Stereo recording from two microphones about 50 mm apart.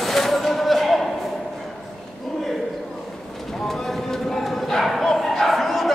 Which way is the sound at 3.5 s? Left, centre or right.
Centre.